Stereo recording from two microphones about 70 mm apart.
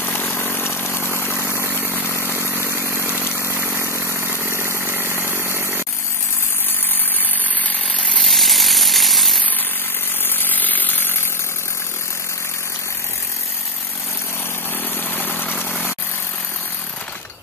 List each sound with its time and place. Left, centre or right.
0.0 s chainsaw: left
0.7 s vehicle: left
2.7 s chainsaw: right
3.1 s chainsaw: left
3.7 s vehicle: right
4.8 s chainsaw: right
7.6 s chainsaw: centre
8.2 s chainsaw: centre
10.2 s chainsaw: left
15.1 s vehicle: left